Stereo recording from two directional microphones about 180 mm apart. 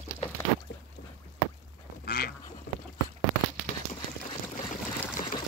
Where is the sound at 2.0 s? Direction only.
60° left (ahead or behind).